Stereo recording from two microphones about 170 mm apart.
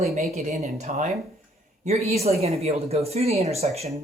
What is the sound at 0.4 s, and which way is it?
Speech, 45° right (ahead or behind).